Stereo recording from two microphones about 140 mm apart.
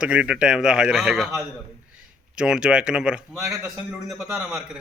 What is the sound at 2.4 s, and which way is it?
A man's voice, 5° right (ahead or behind).